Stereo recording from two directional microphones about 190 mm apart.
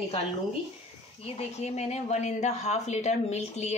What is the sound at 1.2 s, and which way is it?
Speech, 30° left (ahead or behind).